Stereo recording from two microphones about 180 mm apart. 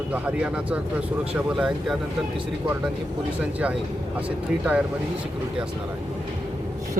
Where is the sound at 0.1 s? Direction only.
5° right (ahead or behind).